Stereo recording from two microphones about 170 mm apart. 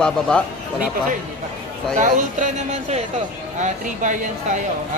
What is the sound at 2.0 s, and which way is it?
Speech, 45° right (ahead or behind).